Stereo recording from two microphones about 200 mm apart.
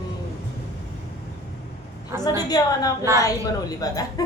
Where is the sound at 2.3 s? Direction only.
20° left (ahead or behind).